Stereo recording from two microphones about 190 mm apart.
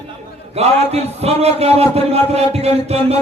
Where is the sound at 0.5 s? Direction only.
35° right (ahead or behind).